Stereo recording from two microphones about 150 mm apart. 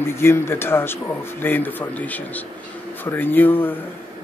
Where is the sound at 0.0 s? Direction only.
15° left (ahead or behind).